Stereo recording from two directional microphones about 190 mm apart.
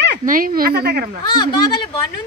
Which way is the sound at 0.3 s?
50° right (ahead or behind).